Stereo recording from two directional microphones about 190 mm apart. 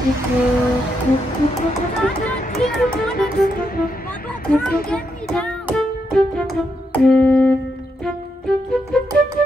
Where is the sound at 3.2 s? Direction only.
50° left (ahead or behind).